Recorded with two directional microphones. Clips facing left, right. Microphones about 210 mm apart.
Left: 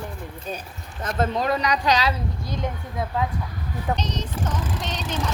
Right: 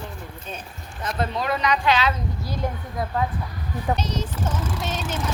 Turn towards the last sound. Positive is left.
turn(degrees=-5)  # may be behind; listen again after turning